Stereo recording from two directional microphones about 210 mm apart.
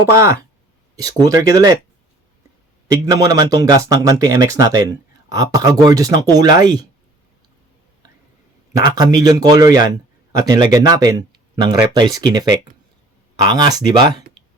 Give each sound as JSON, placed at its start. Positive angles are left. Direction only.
{"t": 0.0, "sound": "a man's voice", "side_deg": -15}
{"t": 2.8, "sound": "a man's voice", "side_deg": -15}
{"t": 8.9, "sound": "a man's voice", "side_deg": -20}